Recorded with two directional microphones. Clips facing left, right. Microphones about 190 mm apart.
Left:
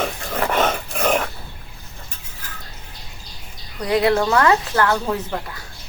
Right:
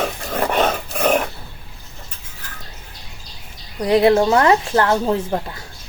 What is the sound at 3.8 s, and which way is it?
A woman's voice, 25° right (ahead or behind).